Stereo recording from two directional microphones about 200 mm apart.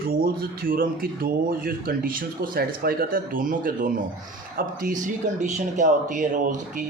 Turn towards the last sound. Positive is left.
turn(degrees=-40)  # may be behind; listen again after turning